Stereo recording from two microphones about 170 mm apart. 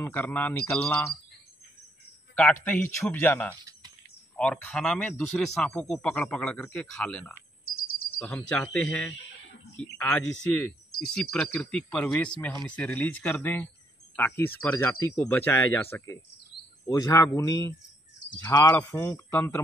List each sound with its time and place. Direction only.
0.0 s speech: 10° left (ahead or behind)
2.5 s speech: 10° left (ahead or behind)